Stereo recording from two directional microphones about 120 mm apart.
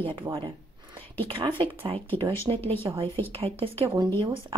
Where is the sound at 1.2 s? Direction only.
45° right (ahead or behind).